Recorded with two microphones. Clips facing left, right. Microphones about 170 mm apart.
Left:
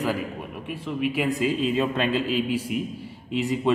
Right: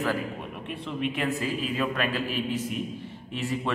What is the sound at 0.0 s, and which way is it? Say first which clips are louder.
Speech: left 2 dB; 10° left (ahead or behind).